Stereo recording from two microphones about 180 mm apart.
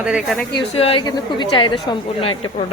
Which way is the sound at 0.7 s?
30° left (ahead or behind).